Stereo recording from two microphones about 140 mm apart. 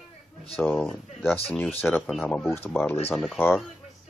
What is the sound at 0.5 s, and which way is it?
Speech, 5° left (ahead or behind).